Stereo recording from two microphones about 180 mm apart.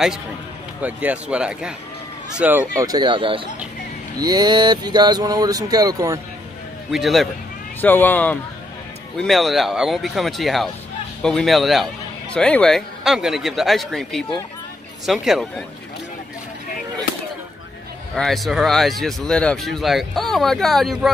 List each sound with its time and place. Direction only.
0.8 s speech: 10° right (ahead or behind)
2.8 s speech: 25° right (ahead or behind)
6.9 s speech: centre (ahead or behind)
7.8 s speech: 10° left (ahead or behind)
18.1 s speech: centre (ahead or behind)